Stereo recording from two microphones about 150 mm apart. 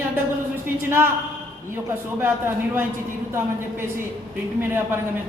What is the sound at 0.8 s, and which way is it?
A woman's voice, 15° right (ahead or behind).